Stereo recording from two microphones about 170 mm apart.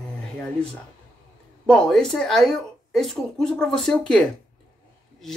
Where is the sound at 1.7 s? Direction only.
5° left (ahead or behind).